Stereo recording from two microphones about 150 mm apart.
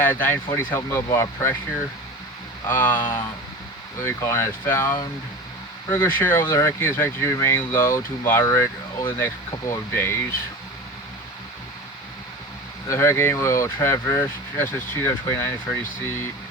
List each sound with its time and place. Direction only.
0.0 s speech: 15° left (ahead or behind)
2.6 s speech: 15° left (ahead or behind)
12.9 s speech: 15° left (ahead or behind)